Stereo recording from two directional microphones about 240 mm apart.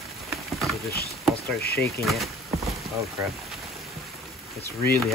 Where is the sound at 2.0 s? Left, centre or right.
Centre.